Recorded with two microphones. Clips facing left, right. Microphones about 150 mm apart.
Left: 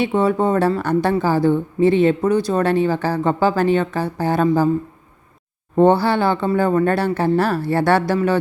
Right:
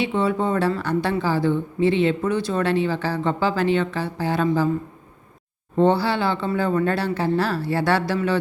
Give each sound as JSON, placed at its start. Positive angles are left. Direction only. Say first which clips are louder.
{"t": 0.0, "sound": "speech", "louder": "left 4 dB", "side_deg": 45}
{"t": 5.7, "sound": "speech", "louder": "left 4 dB", "side_deg": 50}